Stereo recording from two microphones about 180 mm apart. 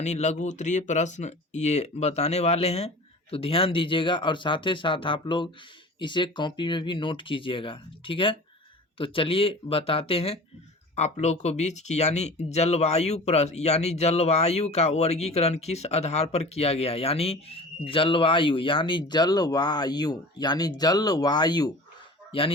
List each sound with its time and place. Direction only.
0.0 s speech: 40° left (ahead or behind)